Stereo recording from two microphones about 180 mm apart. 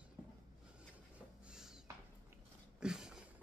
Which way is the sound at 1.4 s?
5° right (ahead or behind).